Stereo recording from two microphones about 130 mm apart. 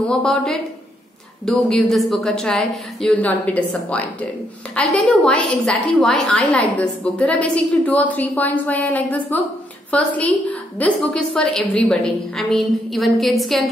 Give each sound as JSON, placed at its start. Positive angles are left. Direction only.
{"t": 0.0, "sound": "a woman's voice", "side_deg": 5}